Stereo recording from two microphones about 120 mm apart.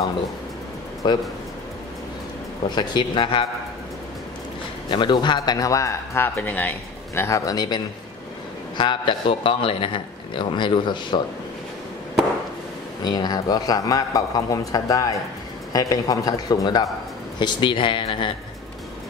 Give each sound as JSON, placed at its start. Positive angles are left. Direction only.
{"t": 1.0, "sound": "a man's voice", "side_deg": 40}
{"t": 2.7, "sound": "a man's voice", "side_deg": 40}
{"t": 4.8, "sound": "a man's voice", "side_deg": 40}
{"t": 7.2, "sound": "a man's voice", "side_deg": 25}
{"t": 13.0, "sound": "a man's voice", "side_deg": 35}